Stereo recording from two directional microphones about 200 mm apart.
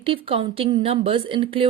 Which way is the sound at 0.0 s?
25° right (ahead or behind).